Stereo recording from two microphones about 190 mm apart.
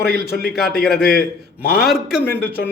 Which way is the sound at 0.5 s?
55° left (ahead or behind).